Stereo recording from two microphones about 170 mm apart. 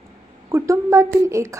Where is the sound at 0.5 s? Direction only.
20° right (ahead or behind).